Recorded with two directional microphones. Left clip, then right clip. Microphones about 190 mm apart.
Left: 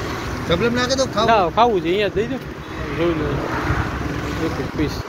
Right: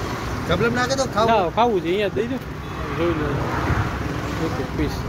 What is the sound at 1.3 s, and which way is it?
Speech, 15° right (ahead or behind).